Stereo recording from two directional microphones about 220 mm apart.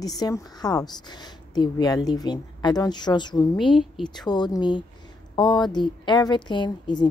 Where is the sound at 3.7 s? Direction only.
Centre (ahead or behind).